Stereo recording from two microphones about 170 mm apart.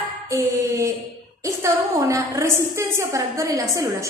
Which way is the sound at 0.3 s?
20° right (ahead or behind).